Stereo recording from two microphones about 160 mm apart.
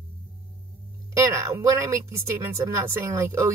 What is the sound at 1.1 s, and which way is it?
Speech, 20° right (ahead or behind).